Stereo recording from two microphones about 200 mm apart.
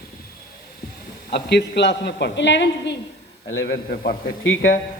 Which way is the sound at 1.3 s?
55° left (ahead or behind).